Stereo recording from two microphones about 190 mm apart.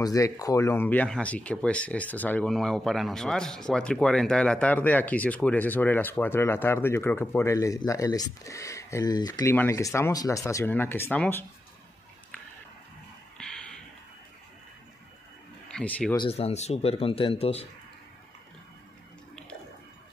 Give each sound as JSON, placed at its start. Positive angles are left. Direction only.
{"t": 0.0, "sound": "speech", "side_deg": 15}
{"t": 13.4, "sound": "a sound", "side_deg": 5}
{"t": 15.7, "sound": "speech", "side_deg": 5}
{"t": 16.2, "sound": "speech", "side_deg": 30}